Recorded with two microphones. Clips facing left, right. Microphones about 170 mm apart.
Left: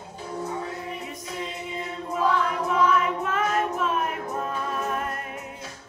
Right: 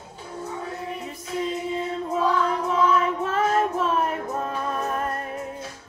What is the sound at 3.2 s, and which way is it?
Child singing, 30° right (ahead or behind).